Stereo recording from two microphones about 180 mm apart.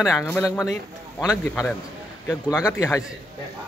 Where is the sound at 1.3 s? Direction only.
15° left (ahead or behind).